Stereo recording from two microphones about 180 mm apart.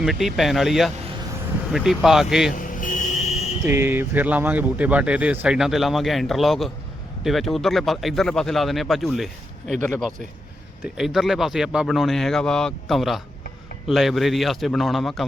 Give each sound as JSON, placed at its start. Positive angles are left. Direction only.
{"t": 0.0, "sound": "speech", "side_deg": 0}
{"t": 2.6, "sound": "vehicle", "side_deg": 45}
{"t": 3.6, "sound": "speech", "side_deg": -15}